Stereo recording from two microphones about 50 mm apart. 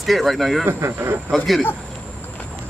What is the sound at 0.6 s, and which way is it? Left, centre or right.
Speech, right.